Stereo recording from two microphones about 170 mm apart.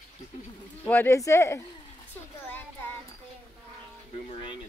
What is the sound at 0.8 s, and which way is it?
Speech, 10° left (ahead or behind).